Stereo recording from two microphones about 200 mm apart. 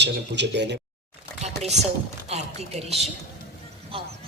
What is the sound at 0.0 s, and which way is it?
Speech, 60° right (ahead or behind).